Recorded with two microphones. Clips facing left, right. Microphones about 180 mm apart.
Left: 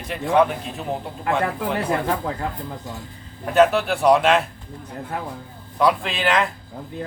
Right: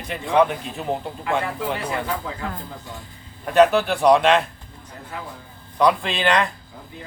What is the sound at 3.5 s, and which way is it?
Speech, centre (ahead or behind).